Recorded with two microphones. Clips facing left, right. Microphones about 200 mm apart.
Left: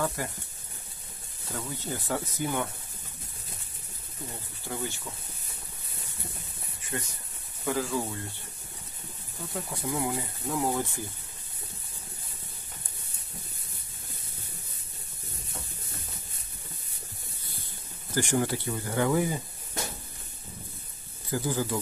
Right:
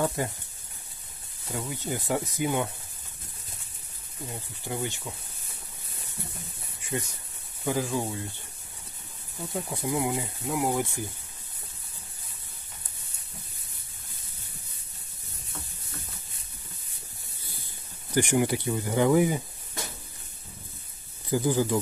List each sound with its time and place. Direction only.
0.0 s speech: 25° right (ahead or behind)
1.5 s speech: 15° right (ahead or behind)
4.6 s speech: 15° right (ahead or behind)
6.9 s speech: 10° right (ahead or behind)
9.5 s speech: 20° right (ahead or behind)
18.1 s speech: 20° right (ahead or behind)
21.3 s speech: 15° right (ahead or behind)